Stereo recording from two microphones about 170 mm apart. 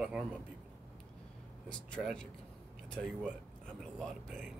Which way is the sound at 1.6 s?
5° left (ahead or behind).